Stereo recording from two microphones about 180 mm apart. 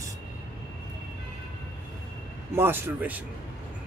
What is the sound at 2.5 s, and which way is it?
Speech, 10° right (ahead or behind).